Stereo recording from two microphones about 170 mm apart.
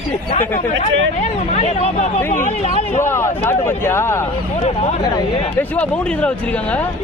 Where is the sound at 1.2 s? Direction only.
40° left (ahead or behind).